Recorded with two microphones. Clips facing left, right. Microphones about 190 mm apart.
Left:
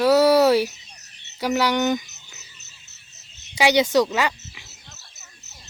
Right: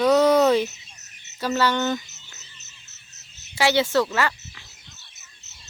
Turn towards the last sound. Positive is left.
turn(degrees=15)  # may be behind; listen again after turning